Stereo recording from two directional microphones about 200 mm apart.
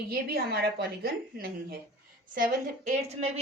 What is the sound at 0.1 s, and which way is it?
A woman's voice, 50° right (ahead or behind).